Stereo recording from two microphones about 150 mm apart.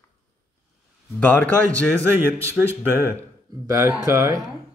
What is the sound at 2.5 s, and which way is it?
Speech, 15° right (ahead or behind).